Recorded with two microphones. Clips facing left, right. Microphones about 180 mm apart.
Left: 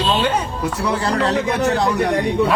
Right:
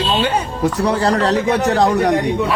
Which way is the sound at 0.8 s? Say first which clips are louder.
Right 2 dB; 35° right (ahead or behind).